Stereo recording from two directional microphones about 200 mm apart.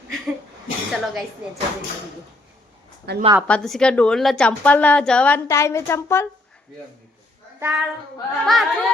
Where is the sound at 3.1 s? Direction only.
55° right (ahead or behind).